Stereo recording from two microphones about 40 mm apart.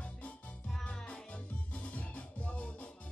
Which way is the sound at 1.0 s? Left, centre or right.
Left.